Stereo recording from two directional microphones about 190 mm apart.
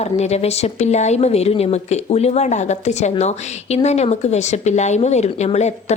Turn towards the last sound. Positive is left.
turn(degrees=35)  # may be behind; listen again after turning